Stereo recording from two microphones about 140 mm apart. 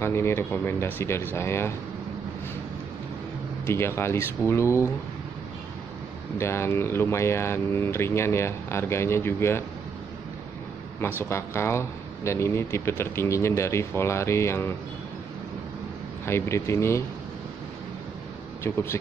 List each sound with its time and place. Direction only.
0.0 s speech: 20° left (ahead or behind)
3.6 s speech: 20° left (ahead or behind)
6.3 s speech: 20° left (ahead or behind)
11.0 s speech: 15° left (ahead or behind)
16.3 s speech: 20° left (ahead or behind)